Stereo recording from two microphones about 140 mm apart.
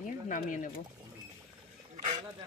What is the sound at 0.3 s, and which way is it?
Speech, 65° left (ahead or behind).